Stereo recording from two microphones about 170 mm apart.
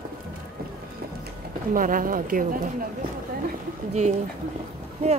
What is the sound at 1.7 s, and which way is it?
Speech, 55° right (ahead or behind).